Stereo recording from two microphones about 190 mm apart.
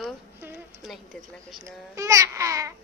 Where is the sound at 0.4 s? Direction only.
10° right (ahead or behind).